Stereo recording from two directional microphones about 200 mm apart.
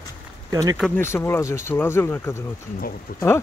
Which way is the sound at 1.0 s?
15° left (ahead or behind).